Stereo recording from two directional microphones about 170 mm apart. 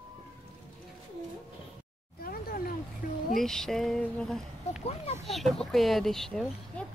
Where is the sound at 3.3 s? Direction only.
5° left (ahead or behind).